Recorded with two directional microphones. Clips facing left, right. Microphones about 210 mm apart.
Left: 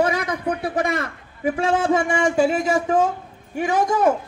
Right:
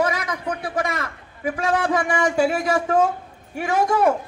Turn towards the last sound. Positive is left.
turn(degrees=20)  # may be behind; listen again after turning